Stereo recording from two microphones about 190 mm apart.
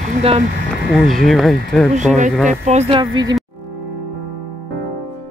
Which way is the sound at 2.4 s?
35° right (ahead or behind).